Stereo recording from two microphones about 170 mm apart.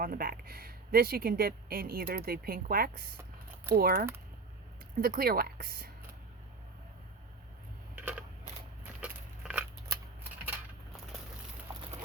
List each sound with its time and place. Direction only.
0.0 s speech: 60° right (ahead or behind)
7.9 s a sound: 10° right (ahead or behind)
9.0 s biting: 5° right (ahead or behind)